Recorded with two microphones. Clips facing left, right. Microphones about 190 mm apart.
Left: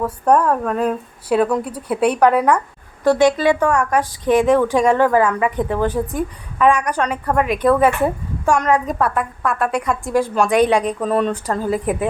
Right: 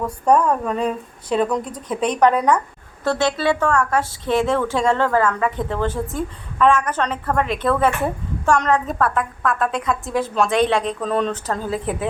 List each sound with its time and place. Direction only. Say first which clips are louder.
0.0 s speech: left 1 dB; 5° left (ahead or behind)